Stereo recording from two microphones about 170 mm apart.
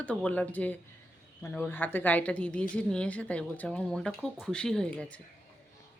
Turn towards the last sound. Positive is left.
turn(degrees=5)  # may be behind; listen again after turning